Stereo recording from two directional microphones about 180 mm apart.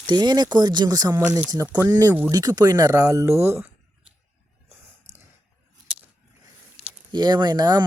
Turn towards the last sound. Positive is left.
turn(degrees=-25)  # may be behind; listen again after turning